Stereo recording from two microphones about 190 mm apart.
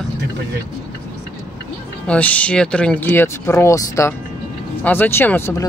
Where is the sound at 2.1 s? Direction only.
5° left (ahead or behind).